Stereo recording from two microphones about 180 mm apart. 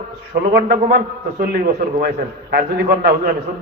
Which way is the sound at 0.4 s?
55° right (ahead or behind).